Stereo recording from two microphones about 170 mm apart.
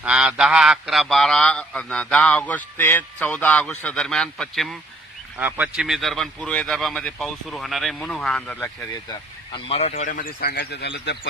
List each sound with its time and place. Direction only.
0.0 s a man's voice: 5° right (ahead or behind)
5.4 s a man's voice: 10° right (ahead or behind); by 8.7 s 5° left (ahead or behind)
9.0 s speech: 30° left (ahead or behind); by 11.3 s 80° left